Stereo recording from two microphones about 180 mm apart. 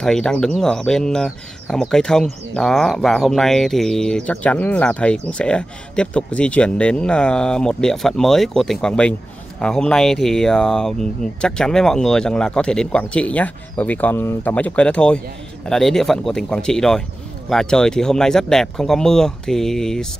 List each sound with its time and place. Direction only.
0.0 s speech: 5° left (ahead or behind)